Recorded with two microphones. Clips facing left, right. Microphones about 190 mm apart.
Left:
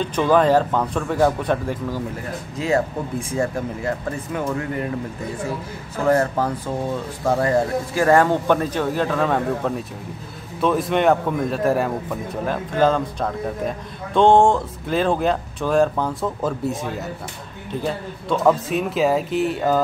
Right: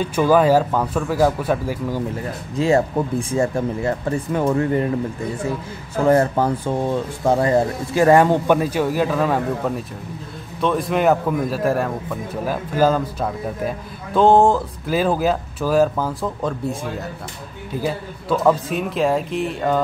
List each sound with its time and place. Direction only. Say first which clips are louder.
0.0 s speech: right 2 dB; 5° right (ahead or behind)
3.3 s speech: right 3 dB; 25° right (ahead or behind)
6.0 s a man's voice: right 3 dB; 25° right (ahead or behind); by 16.7 s centre (ahead or behind)
17.8 s a man's voice: right 2 dB; centre (ahead or behind)